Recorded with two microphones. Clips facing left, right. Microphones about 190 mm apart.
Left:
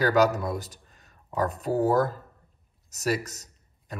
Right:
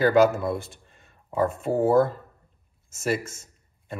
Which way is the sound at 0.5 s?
40° left (ahead or behind).